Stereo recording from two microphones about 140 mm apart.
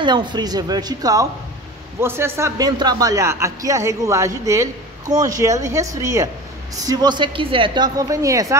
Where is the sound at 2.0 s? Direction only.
15° right (ahead or behind).